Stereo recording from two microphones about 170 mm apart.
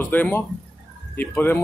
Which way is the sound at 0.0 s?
10° left (ahead or behind).